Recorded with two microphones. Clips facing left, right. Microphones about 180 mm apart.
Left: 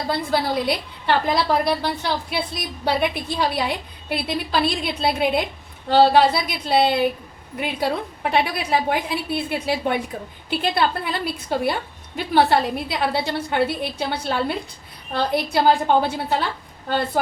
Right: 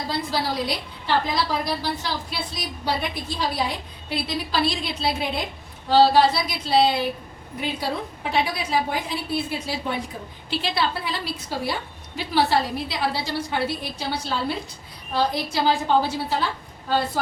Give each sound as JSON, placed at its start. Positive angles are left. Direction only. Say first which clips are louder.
{"t": 0.1, "sound": "a woman's voice", "louder": "left 5 dB", "side_deg": 60}